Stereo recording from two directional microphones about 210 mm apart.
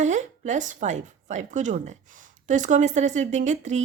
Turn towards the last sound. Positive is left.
turn(degrees=-35)  # may be behind; listen again after turning